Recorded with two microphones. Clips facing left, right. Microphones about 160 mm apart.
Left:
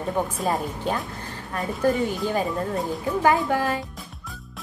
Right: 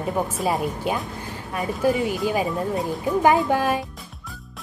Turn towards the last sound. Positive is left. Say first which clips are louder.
# right 3 dB
turn(degrees=-15)  # may be behind; listen again after turning